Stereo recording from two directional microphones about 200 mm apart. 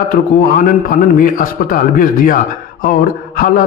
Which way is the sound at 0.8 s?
45° left (ahead or behind).